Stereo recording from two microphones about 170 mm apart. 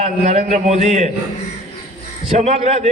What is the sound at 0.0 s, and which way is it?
A man's voice, 40° right (ahead or behind).